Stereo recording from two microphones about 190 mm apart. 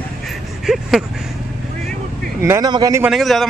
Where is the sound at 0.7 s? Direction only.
Centre (ahead or behind).